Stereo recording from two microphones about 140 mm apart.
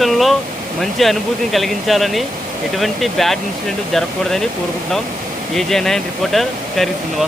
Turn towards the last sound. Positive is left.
turn(degrees=0)  # may be behind; listen again after turning